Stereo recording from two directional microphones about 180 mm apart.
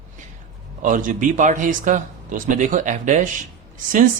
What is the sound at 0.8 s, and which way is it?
Speech, 45° right (ahead or behind).